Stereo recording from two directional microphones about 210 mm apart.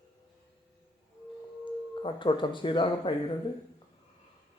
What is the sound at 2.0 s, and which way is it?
Speech, 25° left (ahead or behind).